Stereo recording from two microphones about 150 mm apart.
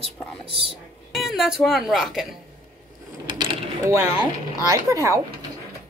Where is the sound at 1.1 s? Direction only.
Centre (ahead or behind).